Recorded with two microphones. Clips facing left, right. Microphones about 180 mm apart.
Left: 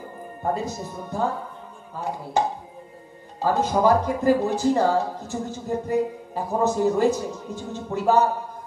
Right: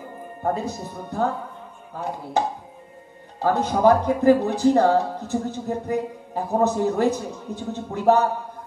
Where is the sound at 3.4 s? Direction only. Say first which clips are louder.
Even; 60° right (ahead or behind).